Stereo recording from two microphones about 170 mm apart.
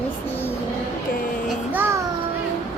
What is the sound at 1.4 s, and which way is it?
Music, 10° right (ahead or behind).